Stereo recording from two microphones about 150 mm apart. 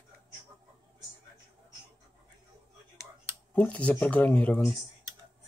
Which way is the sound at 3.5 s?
10° left (ahead or behind).